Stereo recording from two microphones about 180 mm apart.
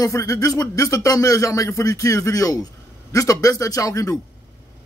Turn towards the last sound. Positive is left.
turn(degrees=20)  # may be behind; listen again after turning